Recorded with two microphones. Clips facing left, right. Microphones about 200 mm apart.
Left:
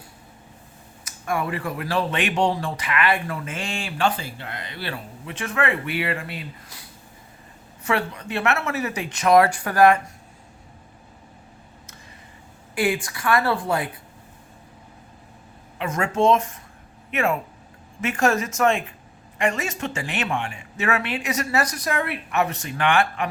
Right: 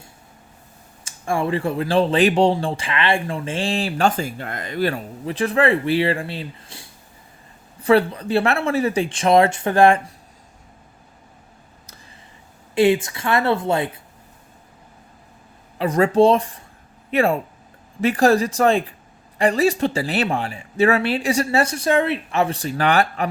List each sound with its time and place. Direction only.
1.0 s speech: 30° right (ahead or behind)
12.7 s speech: 25° right (ahead or behind)
15.8 s speech: 35° right (ahead or behind)